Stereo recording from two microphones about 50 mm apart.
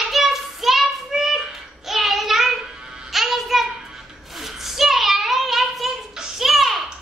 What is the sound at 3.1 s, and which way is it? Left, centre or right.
Music, centre.